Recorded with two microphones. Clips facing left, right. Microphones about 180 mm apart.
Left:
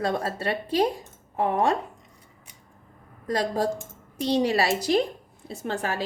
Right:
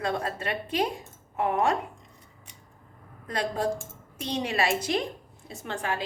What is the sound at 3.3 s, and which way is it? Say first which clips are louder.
Speech: left 3 dB; 35° left (ahead or behind).